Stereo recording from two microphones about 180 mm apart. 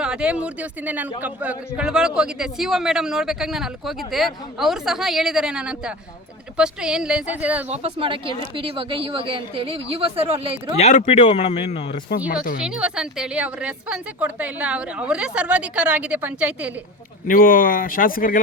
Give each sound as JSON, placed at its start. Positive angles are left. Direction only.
{"t": 0.0, "sound": "a man's voice", "side_deg": -5}
{"t": 7.7, "sound": "speech", "side_deg": -35}
{"t": 10.8, "sound": "speech", "side_deg": 40}
{"t": 12.6, "sound": "a woman's voice", "side_deg": -5}
{"t": 17.2, "sound": "speech", "side_deg": 50}